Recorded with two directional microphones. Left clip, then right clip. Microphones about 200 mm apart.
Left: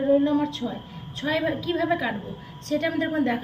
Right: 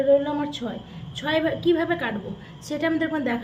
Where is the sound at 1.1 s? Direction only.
55° right (ahead or behind).